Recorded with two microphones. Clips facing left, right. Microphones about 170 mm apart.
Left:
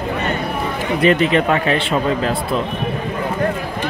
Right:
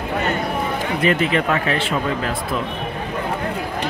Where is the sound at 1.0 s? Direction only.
25° left (ahead or behind).